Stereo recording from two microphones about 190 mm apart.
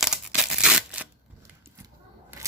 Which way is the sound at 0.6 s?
5° right (ahead or behind).